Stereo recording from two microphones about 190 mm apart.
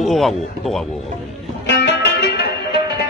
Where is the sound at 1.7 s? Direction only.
60° left (ahead or behind).